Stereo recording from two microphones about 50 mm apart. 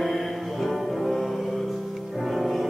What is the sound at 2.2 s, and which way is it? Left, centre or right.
Music, centre.